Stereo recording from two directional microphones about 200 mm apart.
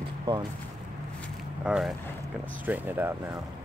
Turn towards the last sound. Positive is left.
turn(degrees=-10)  # may be behind; listen again after turning